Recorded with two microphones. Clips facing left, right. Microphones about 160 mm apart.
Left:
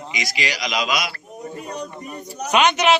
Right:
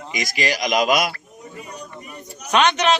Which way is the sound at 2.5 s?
10° left (ahead or behind).